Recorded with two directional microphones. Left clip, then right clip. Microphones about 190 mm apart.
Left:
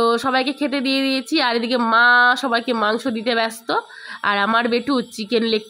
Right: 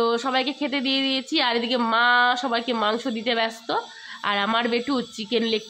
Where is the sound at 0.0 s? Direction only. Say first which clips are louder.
Left 4 dB; 20° left (ahead or behind).